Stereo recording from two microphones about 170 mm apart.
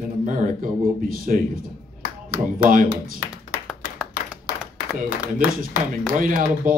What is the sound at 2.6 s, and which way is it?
Speech, 55° right (ahead or behind).